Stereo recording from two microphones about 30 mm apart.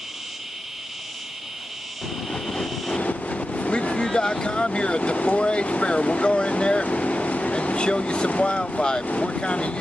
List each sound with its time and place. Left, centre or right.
2.2 s vehicle: centre
3.0 s speech: left
6.8 s vehicle: left
8.8 s speech: left